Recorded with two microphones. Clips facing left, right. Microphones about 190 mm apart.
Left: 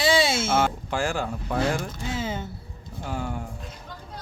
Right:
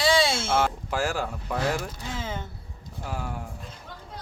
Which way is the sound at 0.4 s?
5° left (ahead or behind).